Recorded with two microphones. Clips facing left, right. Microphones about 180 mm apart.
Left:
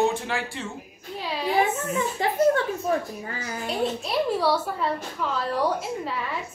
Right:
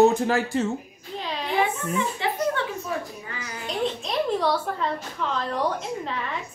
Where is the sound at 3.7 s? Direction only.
5° left (ahead or behind).